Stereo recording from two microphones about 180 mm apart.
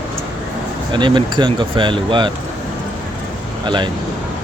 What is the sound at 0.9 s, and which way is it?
Speech, 25° right (ahead or behind).